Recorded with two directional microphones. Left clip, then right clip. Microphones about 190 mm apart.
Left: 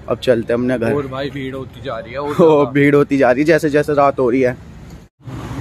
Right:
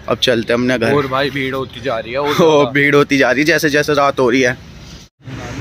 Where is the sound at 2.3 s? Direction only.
5° left (ahead or behind).